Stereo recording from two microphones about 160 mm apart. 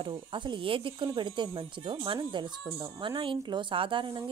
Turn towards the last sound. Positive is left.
turn(degrees=-30)  # may be behind; listen again after turning